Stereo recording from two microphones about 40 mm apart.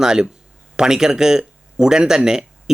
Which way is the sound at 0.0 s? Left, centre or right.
Centre.